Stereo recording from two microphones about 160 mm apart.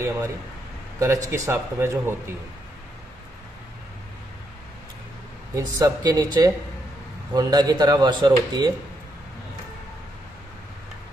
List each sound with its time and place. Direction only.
0.9 s speech: 20° right (ahead or behind)
5.5 s speech: 25° right (ahead or behind)